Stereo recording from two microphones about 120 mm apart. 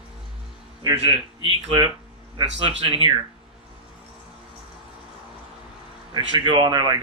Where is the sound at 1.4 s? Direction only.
45° right (ahead or behind).